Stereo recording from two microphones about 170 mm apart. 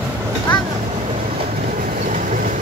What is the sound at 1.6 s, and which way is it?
Train, 50° right (ahead or behind).